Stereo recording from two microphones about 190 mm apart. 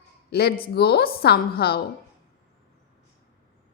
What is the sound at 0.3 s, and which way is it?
A woman's voice, 55° left (ahead or behind).